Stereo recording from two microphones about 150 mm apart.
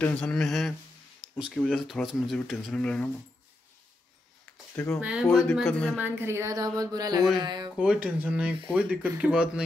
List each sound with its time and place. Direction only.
0.0 s speech: 10° left (ahead or behind)
4.7 s speech: 5° left (ahead or behind)
5.9 s speech: 15° right (ahead or behind)
7.8 s speech: 5° right (ahead or behind)